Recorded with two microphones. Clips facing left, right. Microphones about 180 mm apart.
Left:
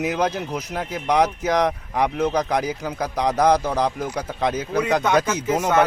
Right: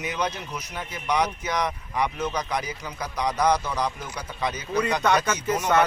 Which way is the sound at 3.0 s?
90° left.